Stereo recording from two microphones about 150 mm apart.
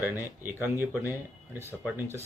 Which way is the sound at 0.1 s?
15° right (ahead or behind).